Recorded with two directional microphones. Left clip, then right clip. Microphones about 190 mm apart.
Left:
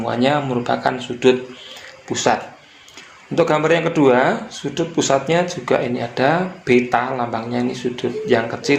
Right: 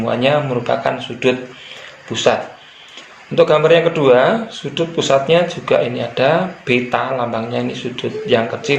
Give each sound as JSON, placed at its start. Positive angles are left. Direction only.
{"t": 0.0, "sound": "speech", "side_deg": 40}